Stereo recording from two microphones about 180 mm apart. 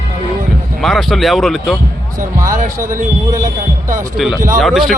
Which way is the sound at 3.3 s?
50° right (ahead or behind).